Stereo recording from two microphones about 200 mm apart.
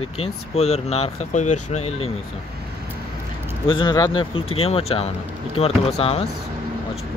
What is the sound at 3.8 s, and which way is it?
Speech, 25° left (ahead or behind).